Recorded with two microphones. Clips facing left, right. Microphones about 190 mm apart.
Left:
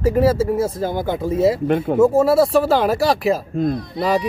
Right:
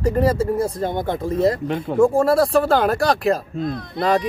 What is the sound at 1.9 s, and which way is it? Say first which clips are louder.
Speech: left 1 dB; 5° left (ahead or behind).